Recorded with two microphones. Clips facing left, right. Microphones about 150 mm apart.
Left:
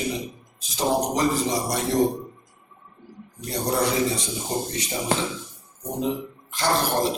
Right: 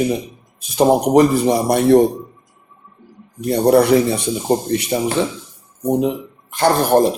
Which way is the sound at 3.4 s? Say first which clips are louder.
Right 12 dB; 60° right (ahead or behind).